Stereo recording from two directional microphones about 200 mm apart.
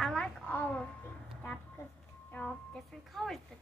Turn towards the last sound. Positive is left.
turn(degrees=0)  # may be behind; listen again after turning